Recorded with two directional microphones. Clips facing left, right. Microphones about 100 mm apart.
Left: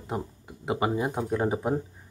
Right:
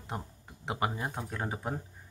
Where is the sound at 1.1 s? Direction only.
15° left (ahead or behind).